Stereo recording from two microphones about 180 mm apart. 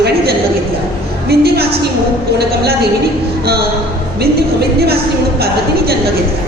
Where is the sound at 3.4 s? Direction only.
60° right (ahead or behind).